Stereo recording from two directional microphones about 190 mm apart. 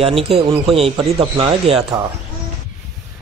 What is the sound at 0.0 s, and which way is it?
A man's voice, 30° right (ahead or behind).